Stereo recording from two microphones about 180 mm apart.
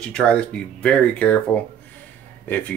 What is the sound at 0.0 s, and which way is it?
Speech, 5° left (ahead or behind).